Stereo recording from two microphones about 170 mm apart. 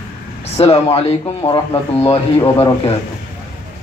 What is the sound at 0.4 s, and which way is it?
Speech, 35° left (ahead or behind).